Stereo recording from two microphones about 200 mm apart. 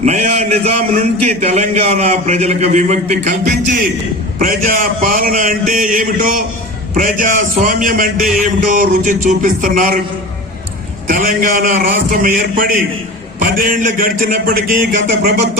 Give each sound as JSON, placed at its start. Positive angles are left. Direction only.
{"t": 0.0, "sound": "a man's voice", "side_deg": -35}
{"t": 11.1, "sound": "a man's voice", "side_deg": -45}